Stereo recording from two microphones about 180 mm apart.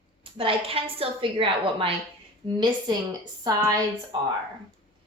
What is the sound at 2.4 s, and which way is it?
Female singing, 30° right (ahead or behind).